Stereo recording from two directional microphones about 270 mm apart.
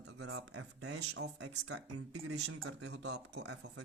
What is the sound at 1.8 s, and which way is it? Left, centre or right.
Speech, right.